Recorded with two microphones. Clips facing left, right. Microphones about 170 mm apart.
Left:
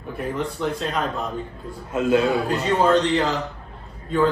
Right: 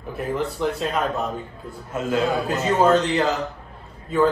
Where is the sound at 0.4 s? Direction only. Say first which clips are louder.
Right 1 dB; 5° right (ahead or behind).